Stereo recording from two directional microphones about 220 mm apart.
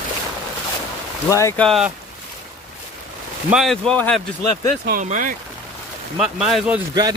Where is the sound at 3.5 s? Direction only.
Centre (ahead or behind).